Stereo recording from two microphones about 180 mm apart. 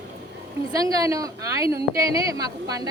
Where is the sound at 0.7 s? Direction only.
20° right (ahead or behind).